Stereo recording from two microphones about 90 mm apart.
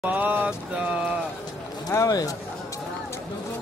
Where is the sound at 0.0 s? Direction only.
20° right (ahead or behind).